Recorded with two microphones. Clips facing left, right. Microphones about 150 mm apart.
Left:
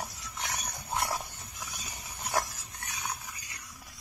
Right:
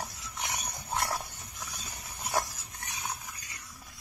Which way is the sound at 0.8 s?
Centre (ahead or behind).